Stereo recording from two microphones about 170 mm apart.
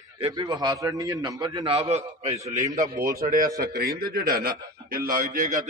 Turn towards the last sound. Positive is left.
turn(degrees=-55)  # may be behind; listen again after turning